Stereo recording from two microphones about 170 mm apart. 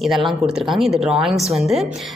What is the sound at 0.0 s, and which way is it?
A woman's voice, centre (ahead or behind).